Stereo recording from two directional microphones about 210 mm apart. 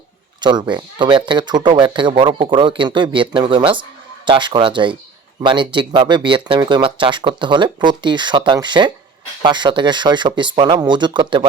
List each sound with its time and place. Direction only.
0.4 s speech: 20° right (ahead or behind)